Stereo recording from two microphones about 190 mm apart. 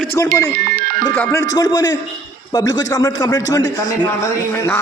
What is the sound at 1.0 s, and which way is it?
A man's voice, 15° left (ahead or behind).